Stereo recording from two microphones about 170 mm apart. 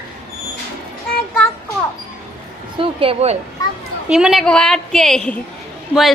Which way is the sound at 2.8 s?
30° right (ahead or behind).